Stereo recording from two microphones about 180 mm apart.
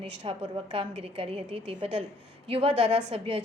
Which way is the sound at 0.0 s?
30° right (ahead or behind).